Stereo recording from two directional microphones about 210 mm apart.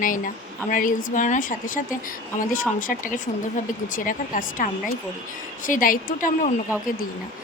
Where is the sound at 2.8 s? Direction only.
40° left (ahead or behind).